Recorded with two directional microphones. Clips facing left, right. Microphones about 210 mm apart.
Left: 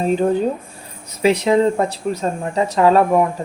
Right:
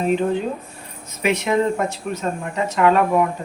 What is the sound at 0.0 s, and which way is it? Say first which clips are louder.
Speech: left 3 dB; 40° left (ahead or behind).